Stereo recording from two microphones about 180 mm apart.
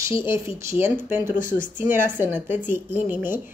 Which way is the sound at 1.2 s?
45° left (ahead or behind).